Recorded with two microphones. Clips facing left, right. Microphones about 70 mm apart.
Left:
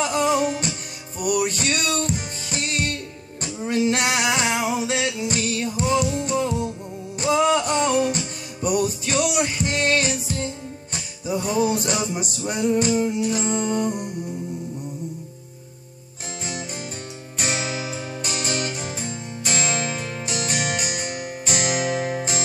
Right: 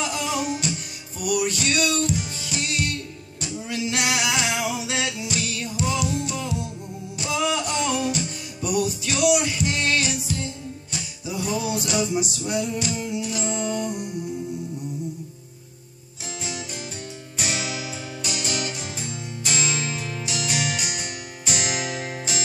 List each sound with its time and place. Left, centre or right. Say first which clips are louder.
0.0 s music: left 6 dB; left
17.4 s music: left 2 dB; left